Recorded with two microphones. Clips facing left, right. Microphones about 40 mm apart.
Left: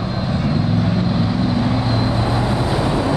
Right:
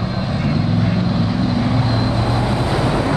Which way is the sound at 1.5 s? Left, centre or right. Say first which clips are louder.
Even; centre.